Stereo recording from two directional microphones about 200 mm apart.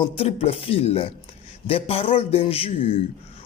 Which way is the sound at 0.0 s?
30° left (ahead or behind).